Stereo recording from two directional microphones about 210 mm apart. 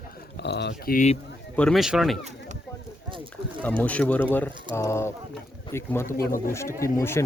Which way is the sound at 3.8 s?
5° left (ahead or behind).